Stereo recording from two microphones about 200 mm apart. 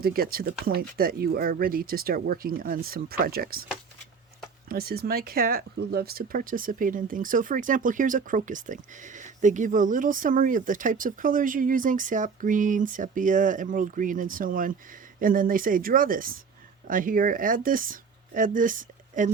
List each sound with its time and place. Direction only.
0.0 s speech: 45° right (ahead or behind)
4.7 s speech: 50° right (ahead or behind)